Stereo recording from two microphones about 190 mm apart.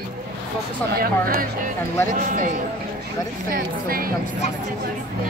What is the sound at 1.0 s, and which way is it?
A woman's voice, 50° right (ahead or behind).